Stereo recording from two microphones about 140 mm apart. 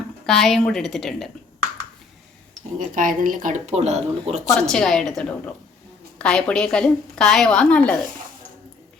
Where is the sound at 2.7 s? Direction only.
70° right (ahead or behind); by 4.4 s 50° right (ahead or behind).